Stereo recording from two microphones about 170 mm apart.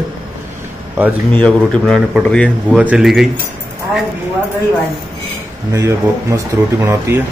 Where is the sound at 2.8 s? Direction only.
5° right (ahead or behind).